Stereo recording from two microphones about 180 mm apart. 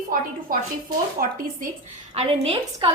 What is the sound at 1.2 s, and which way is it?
Speech, 55° right (ahead or behind).